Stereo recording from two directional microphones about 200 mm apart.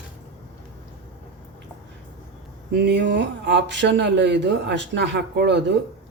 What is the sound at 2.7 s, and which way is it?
Speech, 55° right (ahead or behind).